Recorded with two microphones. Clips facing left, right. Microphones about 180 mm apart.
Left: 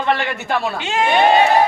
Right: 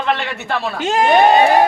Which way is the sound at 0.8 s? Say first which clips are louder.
Right 5 dB; 45° right (ahead or behind).